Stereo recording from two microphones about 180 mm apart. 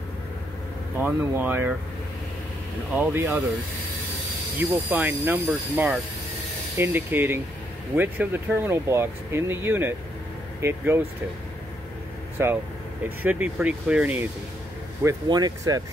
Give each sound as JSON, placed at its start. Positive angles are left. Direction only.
{"t": 0.9, "sound": "speech", "side_deg": -10}
{"t": 2.9, "sound": "speech", "side_deg": -10}
{"t": 4.6, "sound": "speech", "side_deg": -10}
{"t": 6.8, "sound": "speech", "side_deg": -10}
{"t": 12.4, "sound": "speech", "side_deg": -15}
{"t": 15.0, "sound": "speech", "side_deg": -20}